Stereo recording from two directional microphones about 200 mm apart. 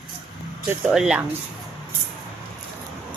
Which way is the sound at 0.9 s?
5° right (ahead or behind).